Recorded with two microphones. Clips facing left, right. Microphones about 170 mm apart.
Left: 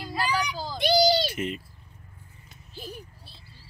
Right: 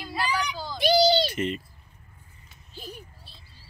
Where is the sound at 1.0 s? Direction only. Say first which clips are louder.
Right 1 dB; centre (ahead or behind).